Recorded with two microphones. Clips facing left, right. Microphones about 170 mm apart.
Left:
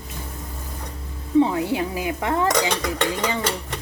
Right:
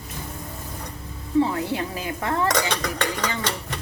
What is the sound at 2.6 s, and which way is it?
Dishes, 20° left (ahead or behind).